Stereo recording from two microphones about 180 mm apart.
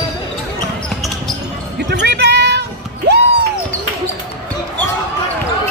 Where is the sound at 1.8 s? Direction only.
70° right (ahead or behind).